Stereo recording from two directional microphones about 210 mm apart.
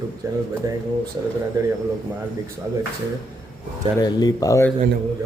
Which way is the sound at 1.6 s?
15° right (ahead or behind).